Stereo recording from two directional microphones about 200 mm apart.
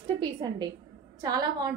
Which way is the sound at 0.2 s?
20° right (ahead or behind).